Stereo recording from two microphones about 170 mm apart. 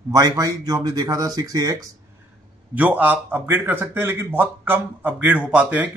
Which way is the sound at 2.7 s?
10° right (ahead or behind).